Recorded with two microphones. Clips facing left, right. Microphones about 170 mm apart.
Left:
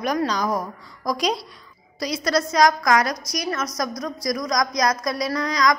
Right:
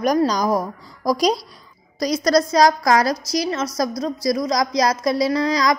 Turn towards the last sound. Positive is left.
turn(degrees=-30)  # may be behind; listen again after turning